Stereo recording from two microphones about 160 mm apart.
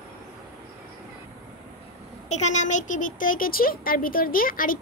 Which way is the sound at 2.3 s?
45° left (ahead or behind).